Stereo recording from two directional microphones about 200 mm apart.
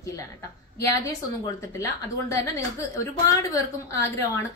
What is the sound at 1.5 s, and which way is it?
A woman's voice, 15° left (ahead or behind).